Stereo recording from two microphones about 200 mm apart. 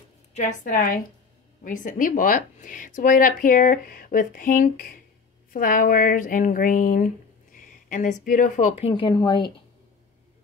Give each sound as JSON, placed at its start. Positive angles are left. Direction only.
{"t": 0.3, "sound": "speech", "side_deg": 35}